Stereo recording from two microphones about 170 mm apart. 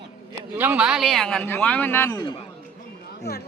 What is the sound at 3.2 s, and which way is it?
Speech, 65° left (ahead or behind).